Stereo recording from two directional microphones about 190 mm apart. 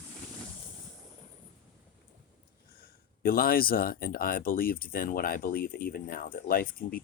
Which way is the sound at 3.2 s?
50° left (ahead or behind).